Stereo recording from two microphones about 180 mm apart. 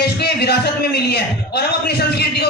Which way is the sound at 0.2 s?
65° left (ahead or behind).